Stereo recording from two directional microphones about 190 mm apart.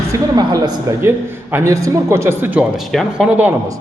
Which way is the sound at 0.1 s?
20° right (ahead or behind).